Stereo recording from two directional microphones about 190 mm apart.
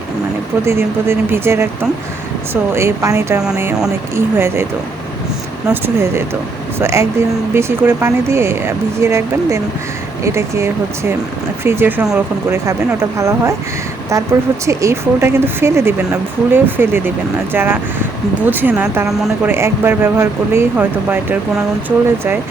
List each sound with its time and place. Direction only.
0.6 s speech: 15° right (ahead or behind)
5.6 s speech: 10° right (ahead or behind)